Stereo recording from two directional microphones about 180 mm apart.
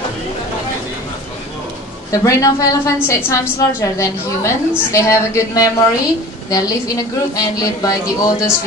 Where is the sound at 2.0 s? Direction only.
15° left (ahead or behind).